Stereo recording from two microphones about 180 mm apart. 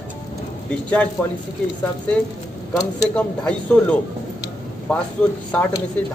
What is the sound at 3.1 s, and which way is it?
A man's voice, 5° left (ahead or behind).